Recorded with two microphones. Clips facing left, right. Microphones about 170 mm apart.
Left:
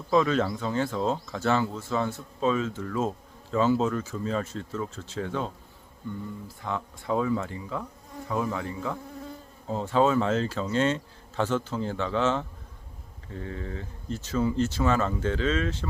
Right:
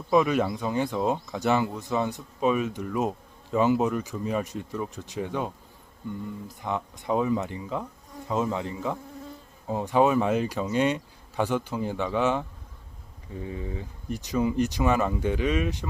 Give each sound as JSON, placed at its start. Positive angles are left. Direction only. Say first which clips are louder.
{"t": 0.1, "sound": "speech", "louder": "right 1 dB", "side_deg": -15}
{"t": 6.6, "sound": "speech", "louder": "right 2 dB", "side_deg": -20}